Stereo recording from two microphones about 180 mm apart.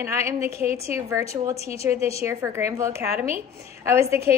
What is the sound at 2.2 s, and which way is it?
A woman's voice, 15° right (ahead or behind).